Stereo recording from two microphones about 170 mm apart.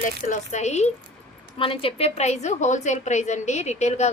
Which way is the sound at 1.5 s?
30° left (ahead or behind).